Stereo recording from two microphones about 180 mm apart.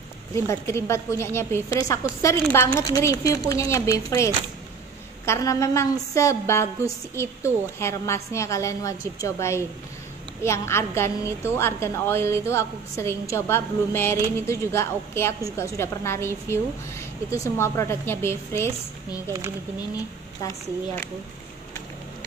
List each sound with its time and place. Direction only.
0.3 s a woman's voice: 15° left (ahead or behind)